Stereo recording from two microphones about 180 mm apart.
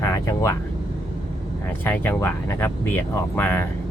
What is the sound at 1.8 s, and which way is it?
Speech, 10° left (ahead or behind).